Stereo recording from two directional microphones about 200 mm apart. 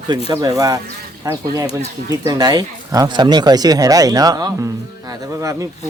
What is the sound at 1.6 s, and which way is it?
Speech, 30° left (ahead or behind).